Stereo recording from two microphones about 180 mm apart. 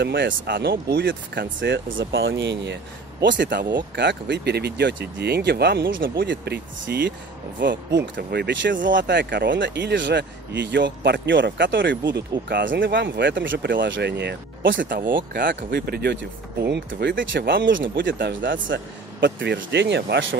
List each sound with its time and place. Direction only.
0.0 s speech: 75° right (ahead or behind)
6.0 s speech: 60° right (ahead or behind)
7.6 s speech: 75° right (ahead or behind); by 15.4 s 50° right (ahead or behind)
15.4 s speech: 65° right (ahead or behind); by 20.3 s 85° right